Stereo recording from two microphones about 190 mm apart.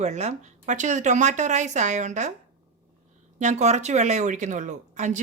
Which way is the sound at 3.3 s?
40° right (ahead or behind).